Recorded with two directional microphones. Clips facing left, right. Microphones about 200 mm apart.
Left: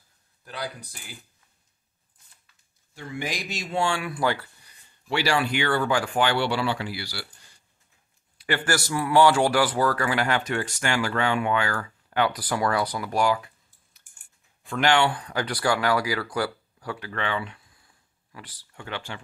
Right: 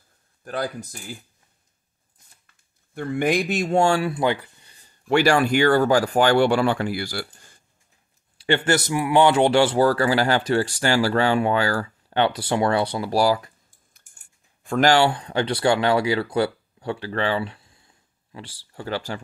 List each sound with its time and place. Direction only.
0.4 s speech: 50° right (ahead or behind)
2.4 s speech: 55° right (ahead or behind)
4.1 s a sound: 20° right (ahead or behind)
4.8 s speech: 50° right (ahead or behind)
8.4 s a man's voice: 25° right (ahead or behind)
14.6 s speech: 45° right (ahead or behind)